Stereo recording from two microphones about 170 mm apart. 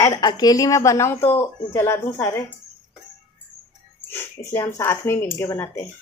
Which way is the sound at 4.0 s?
10° left (ahead or behind).